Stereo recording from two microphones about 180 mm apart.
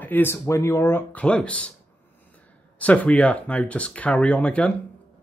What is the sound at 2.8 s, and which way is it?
Speech, 10° left (ahead or behind).